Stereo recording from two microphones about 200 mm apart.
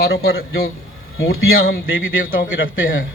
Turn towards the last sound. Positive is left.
turn(degrees=45)  # may be behind; listen again after turning